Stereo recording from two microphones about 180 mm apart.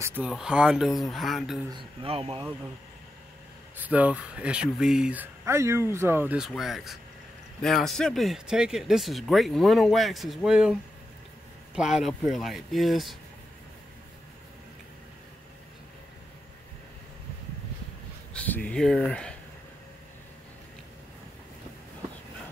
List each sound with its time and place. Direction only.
0.0 s speech: 10° right (ahead or behind)
1.7 s speech: 30° right (ahead or behind)
3.7 s speech: 10° right (ahead or behind)
18.3 s speech: 10° left (ahead or behind)